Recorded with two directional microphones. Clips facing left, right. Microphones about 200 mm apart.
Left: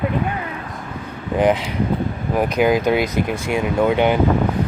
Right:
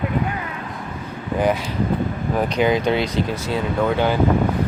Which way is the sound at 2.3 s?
10° left (ahead or behind).